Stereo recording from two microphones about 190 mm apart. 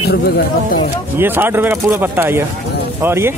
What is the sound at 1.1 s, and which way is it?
Speech, 10° right (ahead or behind).